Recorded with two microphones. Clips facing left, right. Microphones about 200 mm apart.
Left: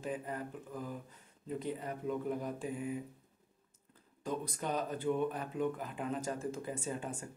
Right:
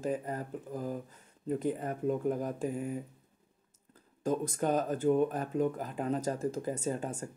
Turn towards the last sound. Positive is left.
turn(degrees=-40)  # may be behind; listen again after turning